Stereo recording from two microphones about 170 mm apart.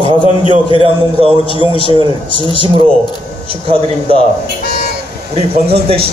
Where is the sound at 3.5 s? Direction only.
35° right (ahead or behind).